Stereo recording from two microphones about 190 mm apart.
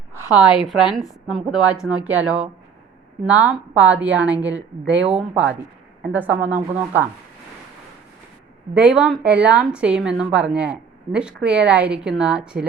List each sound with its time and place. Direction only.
0.1 s a sound: 15° left (ahead or behind)
0.6 s a woman's voice: centre (ahead or behind)
8.7 s a woman's voice: 5° right (ahead or behind)